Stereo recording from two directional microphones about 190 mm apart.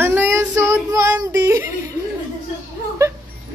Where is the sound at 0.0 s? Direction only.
10° right (ahead or behind).